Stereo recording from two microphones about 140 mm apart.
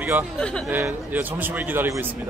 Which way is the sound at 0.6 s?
15° right (ahead or behind).